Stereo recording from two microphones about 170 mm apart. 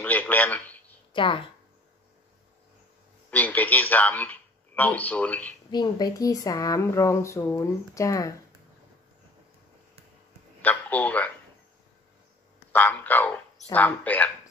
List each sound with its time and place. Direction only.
0.0 s a man's voice: 10° left (ahead or behind)
1.1 s a woman's voice: 30° left (ahead or behind)
3.3 s a man's voice: 10° left (ahead or behind)
5.7 s speech: 25° left (ahead or behind)
10.6 s speech: 10° left (ahead or behind)
12.7 s speech: 10° left (ahead or behind)